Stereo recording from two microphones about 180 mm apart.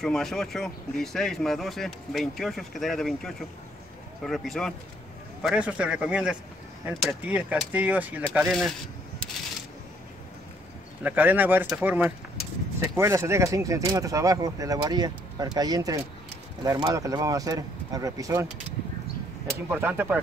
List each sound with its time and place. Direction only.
0.0 s speech: centre (ahead or behind)
11.0 s speech: 10° right (ahead or behind)
19.7 s speech: 10° right (ahead or behind)